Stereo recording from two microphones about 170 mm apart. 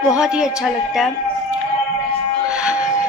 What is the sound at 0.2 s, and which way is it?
Music, 5° right (ahead or behind).